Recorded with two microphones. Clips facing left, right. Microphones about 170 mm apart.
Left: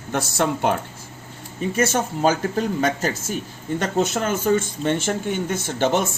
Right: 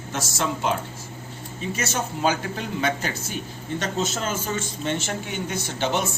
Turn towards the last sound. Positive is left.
turn(degrees=50)  # may be behind; listen again after turning